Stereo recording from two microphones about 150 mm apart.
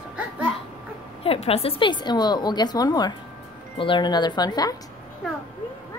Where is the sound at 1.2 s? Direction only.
40° left (ahead or behind).